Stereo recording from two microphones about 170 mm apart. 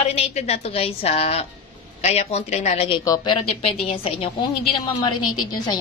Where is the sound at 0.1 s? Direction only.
40° left (ahead or behind).